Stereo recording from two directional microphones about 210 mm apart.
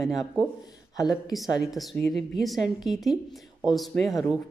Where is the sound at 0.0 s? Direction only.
Centre (ahead or behind).